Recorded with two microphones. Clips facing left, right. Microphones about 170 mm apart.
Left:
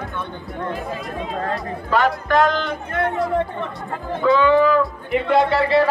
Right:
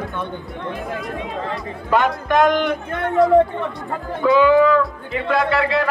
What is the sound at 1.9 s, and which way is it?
Music, 20° right (ahead or behind).